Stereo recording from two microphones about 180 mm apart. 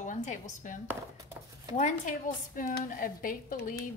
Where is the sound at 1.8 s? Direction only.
45° left (ahead or behind).